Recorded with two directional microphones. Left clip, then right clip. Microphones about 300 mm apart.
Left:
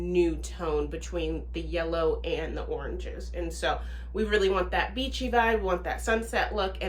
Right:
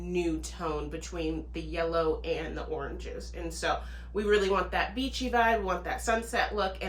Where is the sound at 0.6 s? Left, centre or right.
Centre.